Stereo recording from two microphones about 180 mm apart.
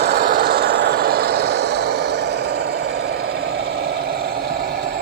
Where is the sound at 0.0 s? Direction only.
65° right (ahead or behind).